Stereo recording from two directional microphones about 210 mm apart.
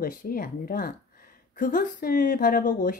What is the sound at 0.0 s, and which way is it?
Speech, 45° left (ahead or behind).